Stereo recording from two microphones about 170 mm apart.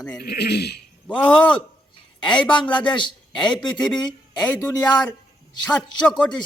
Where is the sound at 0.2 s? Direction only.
70° left (ahead or behind).